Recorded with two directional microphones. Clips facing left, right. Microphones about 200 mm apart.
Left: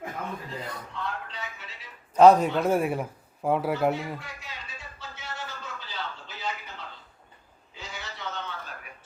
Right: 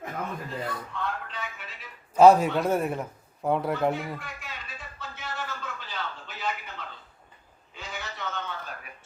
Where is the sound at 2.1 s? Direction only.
5° right (ahead or behind).